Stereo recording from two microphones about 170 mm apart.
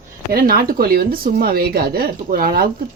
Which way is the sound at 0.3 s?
60° right (ahead or behind).